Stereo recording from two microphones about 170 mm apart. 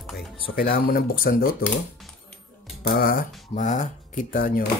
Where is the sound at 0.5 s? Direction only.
60° left (ahead or behind).